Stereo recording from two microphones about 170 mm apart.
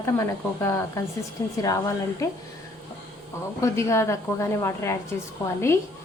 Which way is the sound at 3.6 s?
15° left (ahead or behind).